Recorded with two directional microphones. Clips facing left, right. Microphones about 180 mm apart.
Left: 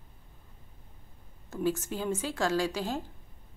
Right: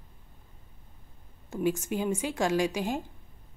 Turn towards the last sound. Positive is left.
turn(degrees=-15)  # may be behind; listen again after turning